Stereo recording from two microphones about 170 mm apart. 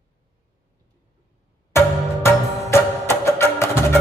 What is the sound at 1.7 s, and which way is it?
Music, 15° left (ahead or behind).